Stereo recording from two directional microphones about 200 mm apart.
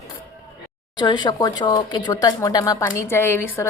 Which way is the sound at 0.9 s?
20° left (ahead or behind).